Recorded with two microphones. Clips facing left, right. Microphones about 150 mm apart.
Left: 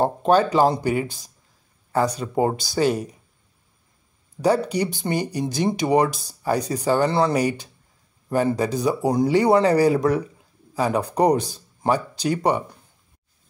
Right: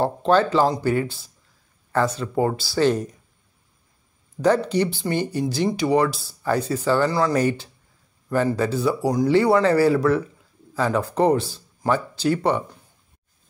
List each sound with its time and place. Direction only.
0.0 s speech: 15° left (ahead or behind)
4.6 s speech: 15° left (ahead or behind)
7.3 s a man's voice: 15° left (ahead or behind)